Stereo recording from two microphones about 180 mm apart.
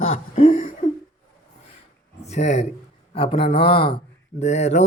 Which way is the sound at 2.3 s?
40° left (ahead or behind).